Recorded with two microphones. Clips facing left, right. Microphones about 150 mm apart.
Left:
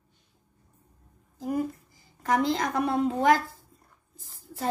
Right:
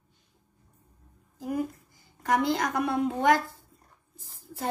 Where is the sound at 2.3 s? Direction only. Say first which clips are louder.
Even; 35° left (ahead or behind).